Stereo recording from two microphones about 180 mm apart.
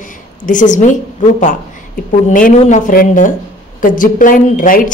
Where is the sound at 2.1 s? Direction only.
50° left (ahead or behind).